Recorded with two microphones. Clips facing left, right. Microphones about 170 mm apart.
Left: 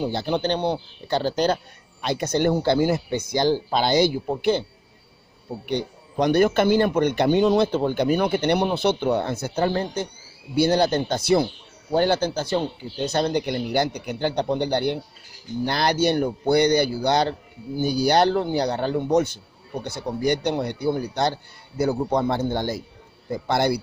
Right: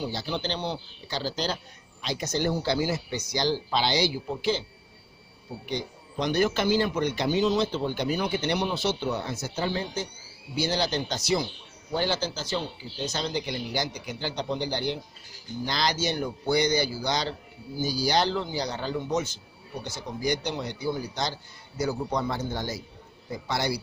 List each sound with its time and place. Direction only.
0.0 s a man's voice: 55° left (ahead or behind)
5.7 s a man's voice: 60° left (ahead or behind)